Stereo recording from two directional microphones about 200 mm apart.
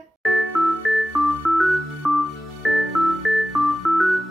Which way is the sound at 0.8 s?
Centre (ahead or behind).